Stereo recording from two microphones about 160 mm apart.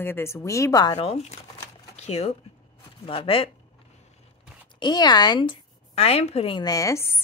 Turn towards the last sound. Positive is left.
turn(degrees=15)  # may be behind; listen again after turning